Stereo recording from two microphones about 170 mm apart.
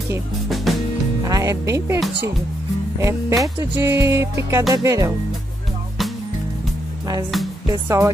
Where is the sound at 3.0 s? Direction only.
15° right (ahead or behind).